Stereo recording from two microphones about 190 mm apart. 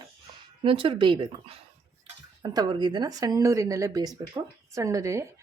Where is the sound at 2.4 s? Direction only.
20° right (ahead or behind).